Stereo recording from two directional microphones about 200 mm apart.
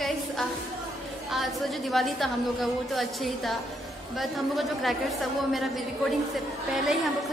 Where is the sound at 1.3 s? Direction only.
Centre (ahead or behind).